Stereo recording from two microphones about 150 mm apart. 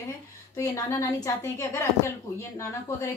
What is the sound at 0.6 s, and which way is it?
Speech, 20° left (ahead or behind).